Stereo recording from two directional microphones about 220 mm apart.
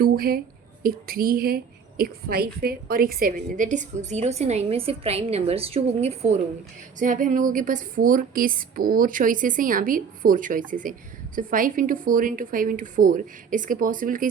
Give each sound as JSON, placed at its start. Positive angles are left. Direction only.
{"t": 0.0, "sound": "a woman's voice", "side_deg": -45}